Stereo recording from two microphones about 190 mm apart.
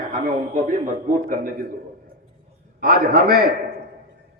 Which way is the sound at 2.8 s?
50° right (ahead or behind).